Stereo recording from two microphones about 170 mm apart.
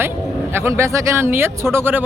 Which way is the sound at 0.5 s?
15° right (ahead or behind).